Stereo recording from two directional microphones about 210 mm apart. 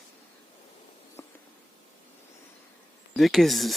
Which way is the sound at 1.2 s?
10° left (ahead or behind).